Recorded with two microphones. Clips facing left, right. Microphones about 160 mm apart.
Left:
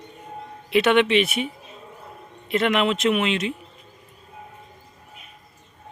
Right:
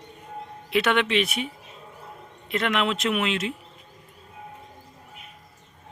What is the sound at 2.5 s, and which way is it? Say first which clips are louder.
Speech: left 4 dB; centre (ahead or behind).